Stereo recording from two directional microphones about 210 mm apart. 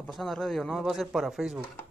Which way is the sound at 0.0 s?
Centre (ahead or behind).